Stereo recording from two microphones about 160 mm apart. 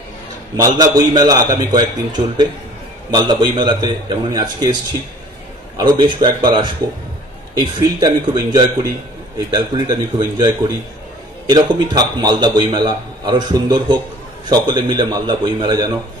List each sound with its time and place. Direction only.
0.6 s a man's voice: 25° right (ahead or behind)
5.8 s a man's voice: 30° right (ahead or behind)